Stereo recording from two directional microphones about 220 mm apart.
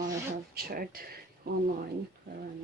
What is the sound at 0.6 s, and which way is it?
Speech, 45° right (ahead or behind).